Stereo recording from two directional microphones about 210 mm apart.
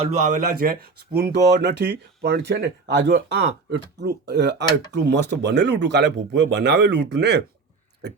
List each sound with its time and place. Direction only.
0.0 s a man's voice: 35° right (ahead or behind); by 7.4 s 50° right (ahead or behind)